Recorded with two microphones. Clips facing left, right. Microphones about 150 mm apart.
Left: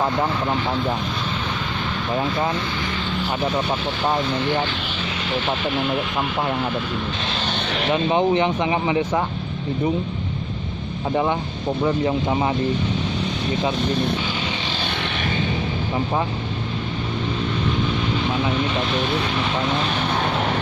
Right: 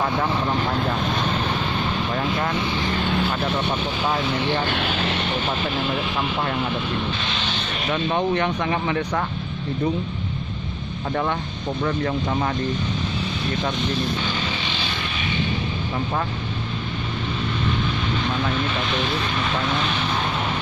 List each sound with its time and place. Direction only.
4.7 s speech: 65° right (ahead or behind)
7.2 s speech: 40° left (ahead or behind)
7.5 s vehicle: 75° left (ahead or behind)
7.9 s speech: 20° left (ahead or behind)
11.8 s speech: 20° left (ahead or behind)
19.9 s vehicle: 50° left (ahead or behind)